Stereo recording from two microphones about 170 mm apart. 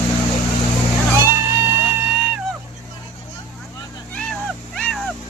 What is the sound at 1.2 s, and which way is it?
Music, 15° right (ahead or behind).